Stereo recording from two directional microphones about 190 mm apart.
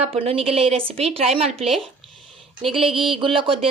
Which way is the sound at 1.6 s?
Centre (ahead or behind).